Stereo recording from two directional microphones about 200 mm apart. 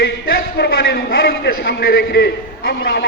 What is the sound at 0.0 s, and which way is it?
A man's voice, 55° left (ahead or behind).